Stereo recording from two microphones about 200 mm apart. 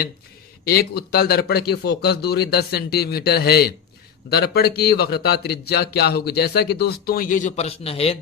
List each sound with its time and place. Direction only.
0.6 s a man's voice: 50° left (ahead or behind); by 8.2 s 30° left (ahead or behind)